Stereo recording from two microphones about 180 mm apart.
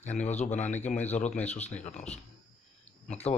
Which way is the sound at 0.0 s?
40° left (ahead or behind).